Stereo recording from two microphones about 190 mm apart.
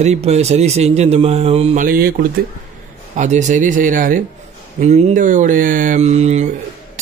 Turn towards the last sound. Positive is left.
turn(degrees=-35)  # may be behind; listen again after turning